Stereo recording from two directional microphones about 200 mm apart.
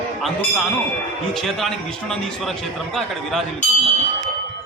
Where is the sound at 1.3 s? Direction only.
Centre (ahead or behind).